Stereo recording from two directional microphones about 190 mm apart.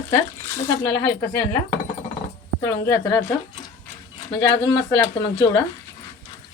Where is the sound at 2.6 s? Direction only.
15° left (ahead or behind).